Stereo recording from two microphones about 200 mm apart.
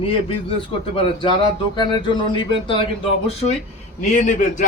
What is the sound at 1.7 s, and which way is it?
Speech, 20° left (ahead or behind).